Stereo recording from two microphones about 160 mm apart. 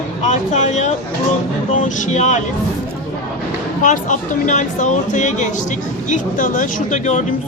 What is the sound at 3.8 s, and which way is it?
Speech, 50° left (ahead or behind).